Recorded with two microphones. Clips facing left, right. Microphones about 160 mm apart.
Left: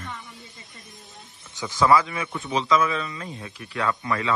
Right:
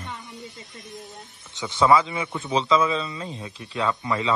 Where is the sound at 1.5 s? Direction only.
25° right (ahead or behind).